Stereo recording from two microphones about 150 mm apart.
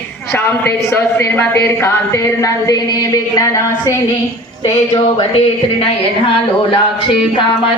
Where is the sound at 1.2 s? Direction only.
15° left (ahead or behind).